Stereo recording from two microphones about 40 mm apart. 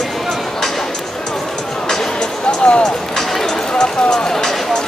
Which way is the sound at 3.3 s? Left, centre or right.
Centre.